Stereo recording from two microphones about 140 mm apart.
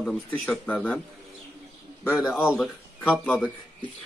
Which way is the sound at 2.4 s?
Centre (ahead or behind).